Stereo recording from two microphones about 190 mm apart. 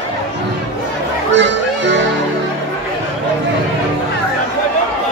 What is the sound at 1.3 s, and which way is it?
Music, 70° right (ahead or behind).